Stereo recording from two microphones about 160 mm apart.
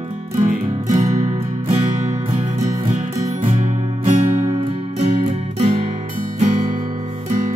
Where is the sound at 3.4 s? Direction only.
40° right (ahead or behind).